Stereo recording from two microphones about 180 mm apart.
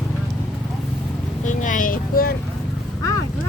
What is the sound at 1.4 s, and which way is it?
Vehicle, 45° left (ahead or behind).